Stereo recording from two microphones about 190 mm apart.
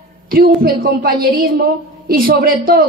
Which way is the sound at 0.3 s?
50° right (ahead or behind).